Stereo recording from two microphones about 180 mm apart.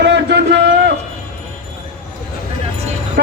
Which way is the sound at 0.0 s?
70° right (ahead or behind).